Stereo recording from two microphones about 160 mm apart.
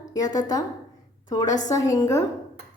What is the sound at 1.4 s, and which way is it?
Speech, 50° left (ahead or behind).